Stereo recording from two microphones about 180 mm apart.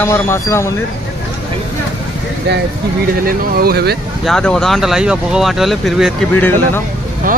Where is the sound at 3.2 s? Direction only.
55° right (ahead or behind).